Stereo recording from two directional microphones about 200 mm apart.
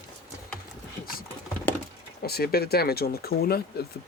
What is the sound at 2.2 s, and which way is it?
Speech, 50° left (ahead or behind).